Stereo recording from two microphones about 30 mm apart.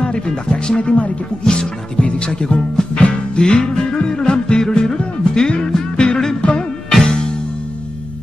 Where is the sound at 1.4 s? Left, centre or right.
Left.